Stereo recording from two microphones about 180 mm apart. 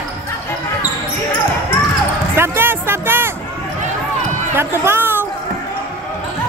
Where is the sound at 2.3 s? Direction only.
15° right (ahead or behind).